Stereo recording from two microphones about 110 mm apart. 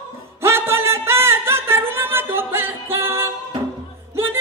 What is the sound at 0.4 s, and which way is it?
Music, 20° right (ahead or behind).